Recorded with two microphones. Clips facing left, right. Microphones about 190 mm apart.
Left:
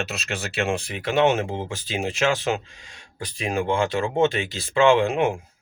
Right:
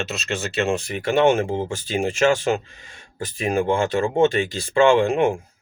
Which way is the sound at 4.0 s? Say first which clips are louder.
Right 3 dB; 50° right (ahead or behind).